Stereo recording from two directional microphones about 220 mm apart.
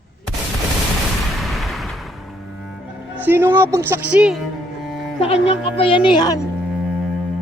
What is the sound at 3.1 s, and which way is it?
Speech, 10° right (ahead or behind).